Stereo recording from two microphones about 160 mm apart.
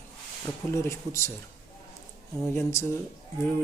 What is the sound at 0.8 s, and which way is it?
Speech, 20° left (ahead or behind).